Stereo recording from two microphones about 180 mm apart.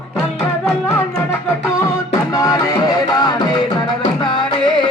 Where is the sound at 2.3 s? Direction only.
20° left (ahead or behind).